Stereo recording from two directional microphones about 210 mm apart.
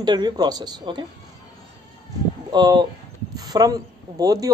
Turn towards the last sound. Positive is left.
turn(degrees=-15)  # may be behind; listen again after turning